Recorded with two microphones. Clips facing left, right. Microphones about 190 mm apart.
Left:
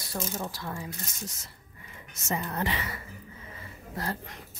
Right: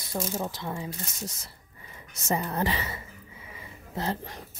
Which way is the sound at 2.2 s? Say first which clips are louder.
Right 3 dB; 35° right (ahead or behind).